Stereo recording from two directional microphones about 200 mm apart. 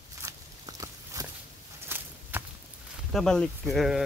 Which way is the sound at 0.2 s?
15° right (ahead or behind).